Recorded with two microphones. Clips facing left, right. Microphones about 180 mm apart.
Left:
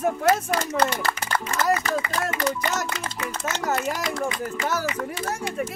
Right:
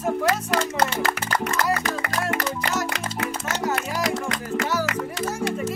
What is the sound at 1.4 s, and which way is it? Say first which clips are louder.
Speech: left 1 dB; 70° right (ahead or behind).